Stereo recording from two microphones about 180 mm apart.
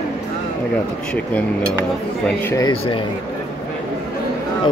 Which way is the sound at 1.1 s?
10° left (ahead or behind).